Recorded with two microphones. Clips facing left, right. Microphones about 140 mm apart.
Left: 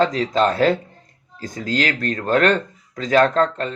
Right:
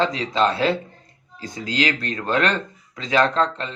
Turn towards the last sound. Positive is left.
turn(degrees=45)  # may be behind; listen again after turning